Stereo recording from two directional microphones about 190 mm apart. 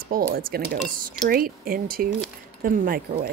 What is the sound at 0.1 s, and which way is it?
Speech, 50° right (ahead or behind).